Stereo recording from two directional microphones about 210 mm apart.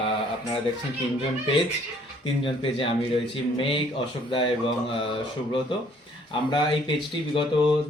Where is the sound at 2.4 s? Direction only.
25° left (ahead or behind).